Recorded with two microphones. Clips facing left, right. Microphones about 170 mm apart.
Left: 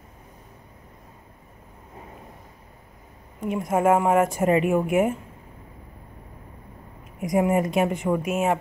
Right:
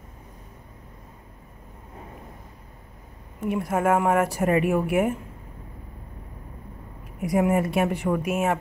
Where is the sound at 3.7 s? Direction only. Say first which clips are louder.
Left 3 dB; 10° left (ahead or behind).